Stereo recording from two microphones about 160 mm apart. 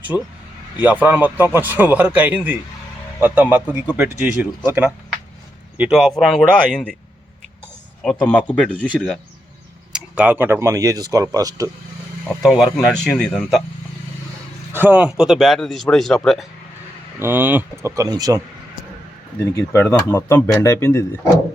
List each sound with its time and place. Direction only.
0.1 s speech: 20° left (ahead or behind)
0.8 s a man's voice: 10° right (ahead or behind); by 6.9 s 5° left (ahead or behind)
8.0 s speech: 10° left (ahead or behind)
9.9 s speech: 10° right (ahead or behind)
12.4 s speech: 5° right (ahead or behind)
14.7 s speech: 10° right (ahead or behind)
17.2 s a man's voice: 15° right (ahead or behind)
19.5 s speech: 15° left (ahead or behind)